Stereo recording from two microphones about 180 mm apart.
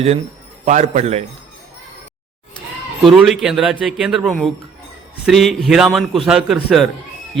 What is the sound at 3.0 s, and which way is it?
A man's voice, centre (ahead or behind).